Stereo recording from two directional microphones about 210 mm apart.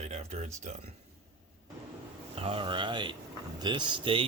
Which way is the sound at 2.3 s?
25° right (ahead or behind).